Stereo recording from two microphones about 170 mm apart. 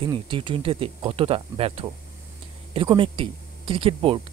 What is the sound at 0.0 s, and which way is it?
Speech, 30° right (ahead or behind).